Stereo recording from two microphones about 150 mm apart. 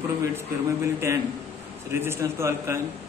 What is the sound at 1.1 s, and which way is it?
A man's voice, 20° right (ahead or behind).